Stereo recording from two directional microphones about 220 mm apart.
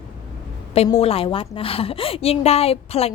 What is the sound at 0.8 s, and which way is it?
A woman's voice, 25° left (ahead or behind).